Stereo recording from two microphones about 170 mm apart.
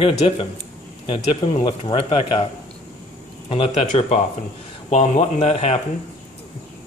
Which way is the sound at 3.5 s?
40° left (ahead or behind).